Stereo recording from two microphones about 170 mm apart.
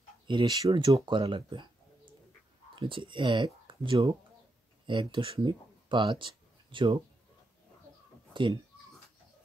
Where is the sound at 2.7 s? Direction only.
30° right (ahead or behind).